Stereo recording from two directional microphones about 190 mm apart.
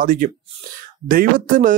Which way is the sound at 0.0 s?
45° right (ahead or behind).